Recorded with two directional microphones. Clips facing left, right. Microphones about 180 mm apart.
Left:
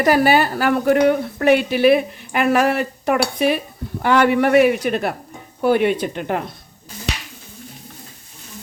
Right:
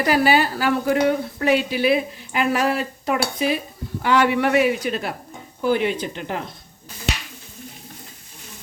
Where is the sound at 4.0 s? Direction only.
50° left (ahead or behind).